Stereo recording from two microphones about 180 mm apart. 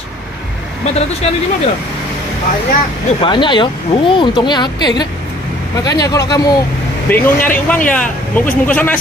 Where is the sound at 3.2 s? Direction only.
25° left (ahead or behind).